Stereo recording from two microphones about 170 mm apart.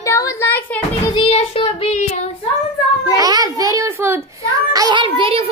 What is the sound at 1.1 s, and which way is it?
Child singing, 35° left (ahead or behind).